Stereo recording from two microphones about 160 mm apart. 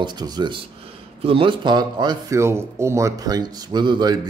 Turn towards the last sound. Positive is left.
turn(degrees=-25)  # may be behind; listen again after turning